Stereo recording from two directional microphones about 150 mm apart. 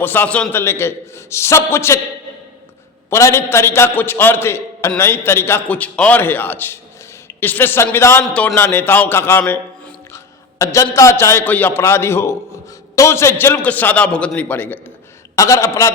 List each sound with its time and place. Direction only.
0.0 s a man's voice: 15° left (ahead or behind)
3.1 s a man's voice: 20° left (ahead or behind)
8.2 s a man's voice: 5° left (ahead or behind); by 15.9 s 20° left (ahead or behind)